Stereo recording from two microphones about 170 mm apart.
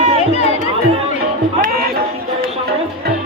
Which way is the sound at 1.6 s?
65° right (ahead or behind).